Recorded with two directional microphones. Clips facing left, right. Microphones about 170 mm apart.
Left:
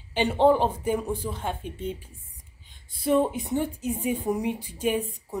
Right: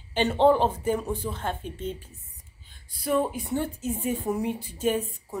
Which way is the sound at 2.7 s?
20° left (ahead or behind).